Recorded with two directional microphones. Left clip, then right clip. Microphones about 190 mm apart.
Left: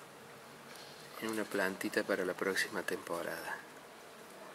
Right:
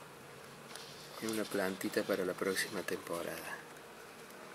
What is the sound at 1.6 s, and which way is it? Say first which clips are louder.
Speech: left 2 dB; centre (ahead or behind).